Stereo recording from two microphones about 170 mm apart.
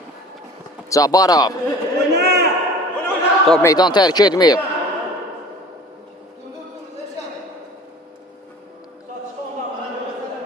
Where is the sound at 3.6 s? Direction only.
20° left (ahead or behind).